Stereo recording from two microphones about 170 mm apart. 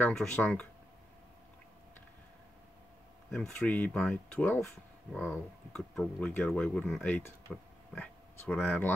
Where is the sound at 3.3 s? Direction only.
5° left (ahead or behind).